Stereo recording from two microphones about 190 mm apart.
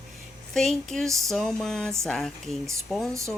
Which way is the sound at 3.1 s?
15° right (ahead or behind).